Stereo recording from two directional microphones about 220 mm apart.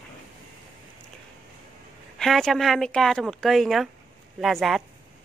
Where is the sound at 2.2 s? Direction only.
Centre (ahead or behind).